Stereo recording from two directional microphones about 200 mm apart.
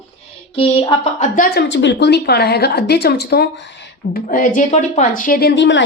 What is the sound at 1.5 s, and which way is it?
A woman's voice, 55° left (ahead or behind).